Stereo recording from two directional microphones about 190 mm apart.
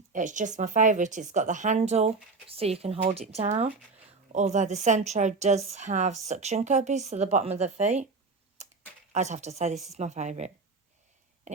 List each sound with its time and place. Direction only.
0.1 s a woman's voice: 40° right (ahead or behind)
9.1 s a woman's voice: 35° right (ahead or behind)
11.5 s a sound: 40° right (ahead or behind)